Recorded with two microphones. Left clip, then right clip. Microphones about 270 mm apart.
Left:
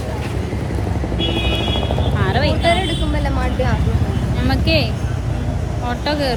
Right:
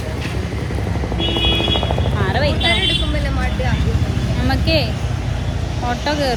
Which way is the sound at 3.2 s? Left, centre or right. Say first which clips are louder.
Left 2 dB; left.